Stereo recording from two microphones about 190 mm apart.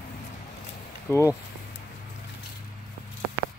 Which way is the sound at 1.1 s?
15° left (ahead or behind).